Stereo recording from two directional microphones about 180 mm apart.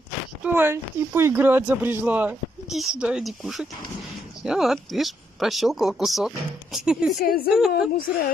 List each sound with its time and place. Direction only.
0.4 s speech: 10° right (ahead or behind)
7.2 s a woman's voice: 55° left (ahead or behind)
7.4 s speech: centre (ahead or behind)